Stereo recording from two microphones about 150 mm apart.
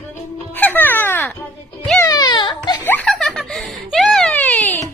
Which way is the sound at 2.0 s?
25° left (ahead or behind).